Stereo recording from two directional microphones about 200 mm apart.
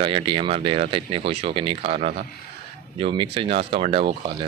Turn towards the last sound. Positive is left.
turn(degrees=-25)  # may be behind; listen again after turning